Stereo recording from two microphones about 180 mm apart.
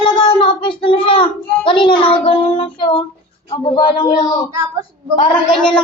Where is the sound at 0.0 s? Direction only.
25° left (ahead or behind).